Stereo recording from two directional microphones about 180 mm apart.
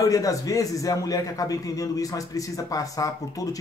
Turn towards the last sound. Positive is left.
turn(degrees=20)  # may be behind; listen again after turning